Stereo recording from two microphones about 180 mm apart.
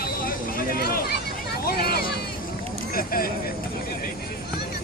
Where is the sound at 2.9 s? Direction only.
55° left (ahead or behind).